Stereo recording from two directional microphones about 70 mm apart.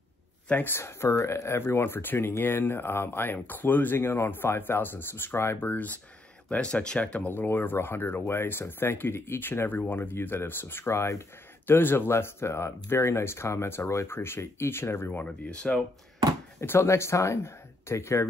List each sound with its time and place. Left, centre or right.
0.5 s speech: left
0.7 s speech: left
6.5 s speech: centre; by 15.2 s left
15.2 s speech: centre
16.5 s speech: left